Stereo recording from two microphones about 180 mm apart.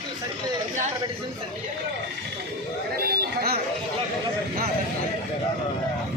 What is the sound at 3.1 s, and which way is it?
Chatter, 60° right (ahead or behind).